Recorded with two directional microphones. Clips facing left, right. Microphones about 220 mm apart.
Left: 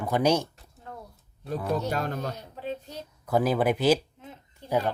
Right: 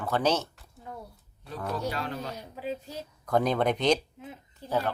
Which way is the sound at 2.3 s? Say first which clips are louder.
Even; 10° right (ahead or behind).